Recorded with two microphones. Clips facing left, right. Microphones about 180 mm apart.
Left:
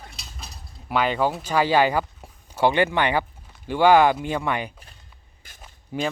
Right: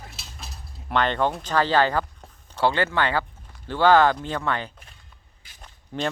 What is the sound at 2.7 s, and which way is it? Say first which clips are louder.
Speech: left 3 dB; 15° left (ahead or behind).